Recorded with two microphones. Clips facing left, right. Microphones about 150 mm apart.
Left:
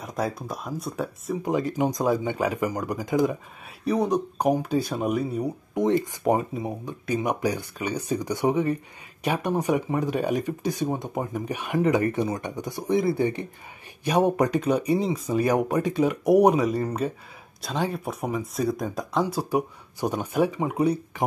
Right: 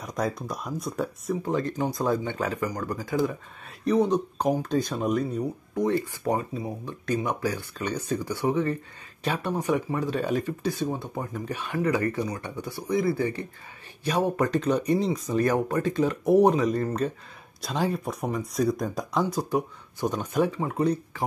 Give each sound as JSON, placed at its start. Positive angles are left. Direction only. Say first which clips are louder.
{"t": 0.0, "sound": "a sound", "louder": "even", "side_deg": 5}
{"t": 0.5, "sound": "speech", "louder": "even", "side_deg": 0}
{"t": 1.4, "sound": "speech", "louder": "left 4 dB", "side_deg": 10}
{"t": 5.8, "sound": "speech", "louder": "left 3 dB", "side_deg": 20}